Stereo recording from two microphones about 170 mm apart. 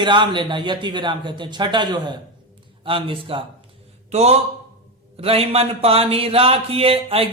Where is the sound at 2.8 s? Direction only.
30° right (ahead or behind).